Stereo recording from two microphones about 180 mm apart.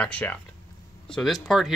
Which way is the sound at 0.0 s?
10° left (ahead or behind).